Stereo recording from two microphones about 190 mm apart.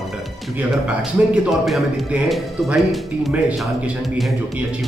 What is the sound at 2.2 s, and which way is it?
Speech, centre (ahead or behind).